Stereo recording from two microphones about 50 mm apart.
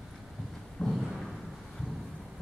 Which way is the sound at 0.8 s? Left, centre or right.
Centre.